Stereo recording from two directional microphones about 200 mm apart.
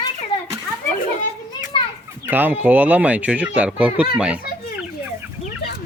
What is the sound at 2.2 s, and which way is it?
Speech, 10° right (ahead or behind).